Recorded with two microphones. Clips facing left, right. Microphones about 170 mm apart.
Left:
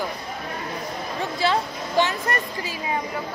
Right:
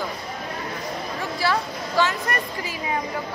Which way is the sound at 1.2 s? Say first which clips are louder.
Left 2 dB; 20° left (ahead or behind).